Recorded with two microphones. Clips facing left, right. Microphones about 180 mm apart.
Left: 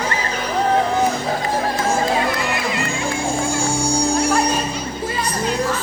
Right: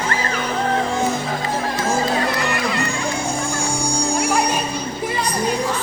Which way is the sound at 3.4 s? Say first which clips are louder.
Left 3 dB; 15° right (ahead or behind).